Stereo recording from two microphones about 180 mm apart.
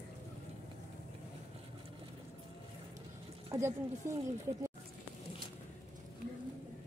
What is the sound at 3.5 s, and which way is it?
Speech, 15° right (ahead or behind).